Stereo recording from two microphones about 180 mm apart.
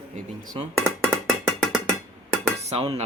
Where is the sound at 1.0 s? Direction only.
Centre (ahead or behind).